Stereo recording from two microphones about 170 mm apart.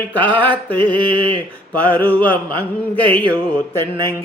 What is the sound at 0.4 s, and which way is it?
Music, 10° left (ahead or behind).